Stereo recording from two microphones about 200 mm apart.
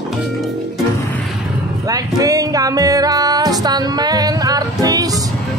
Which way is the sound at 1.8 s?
20° right (ahead or behind).